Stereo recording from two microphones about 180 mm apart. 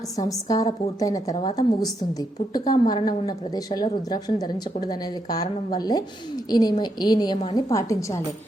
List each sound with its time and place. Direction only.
0.2 s a woman's voice: 20° left (ahead or behind)